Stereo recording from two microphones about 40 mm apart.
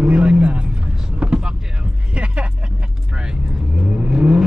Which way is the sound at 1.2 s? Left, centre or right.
Right.